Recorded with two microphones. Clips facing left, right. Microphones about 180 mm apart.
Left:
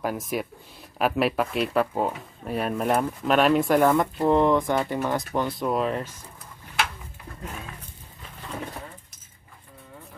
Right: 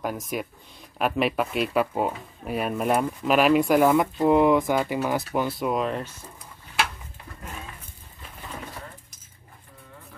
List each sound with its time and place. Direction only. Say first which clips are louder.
0.0 s speech: left 2 dB; centre (ahead or behind)